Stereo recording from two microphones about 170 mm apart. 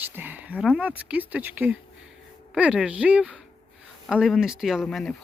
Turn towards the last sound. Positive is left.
turn(degrees=0)  # may be behind; listen again after turning